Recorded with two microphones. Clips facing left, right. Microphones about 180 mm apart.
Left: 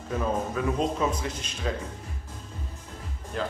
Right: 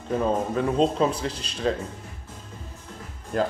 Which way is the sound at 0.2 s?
30° right (ahead or behind).